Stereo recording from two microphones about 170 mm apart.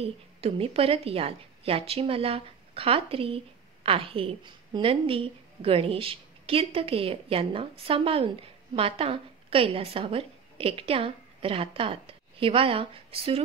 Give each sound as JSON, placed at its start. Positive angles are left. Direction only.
{"t": 0.0, "sound": "a woman's voice", "side_deg": -35}